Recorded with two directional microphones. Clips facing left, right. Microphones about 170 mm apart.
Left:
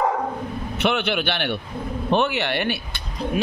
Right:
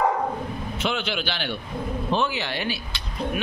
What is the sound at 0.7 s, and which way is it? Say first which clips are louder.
A man's voice: left 6 dB; 65° left (ahead or behind).